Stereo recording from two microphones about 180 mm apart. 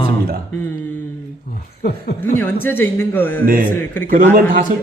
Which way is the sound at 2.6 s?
10° left (ahead or behind).